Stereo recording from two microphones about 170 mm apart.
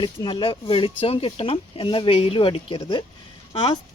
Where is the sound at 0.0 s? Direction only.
30° left (ahead or behind).